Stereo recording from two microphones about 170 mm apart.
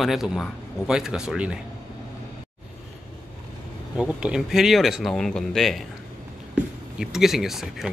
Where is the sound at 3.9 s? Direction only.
5° right (ahead or behind).